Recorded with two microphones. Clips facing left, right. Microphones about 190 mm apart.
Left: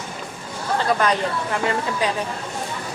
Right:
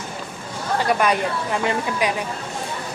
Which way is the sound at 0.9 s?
10° right (ahead or behind).